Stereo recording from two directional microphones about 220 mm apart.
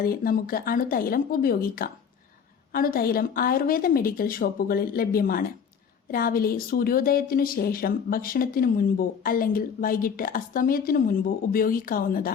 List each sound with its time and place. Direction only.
0.0 s a woman's voice: 40° left (ahead or behind)